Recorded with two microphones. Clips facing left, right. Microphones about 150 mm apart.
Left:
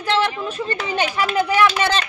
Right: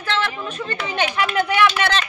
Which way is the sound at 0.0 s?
15° left (ahead or behind).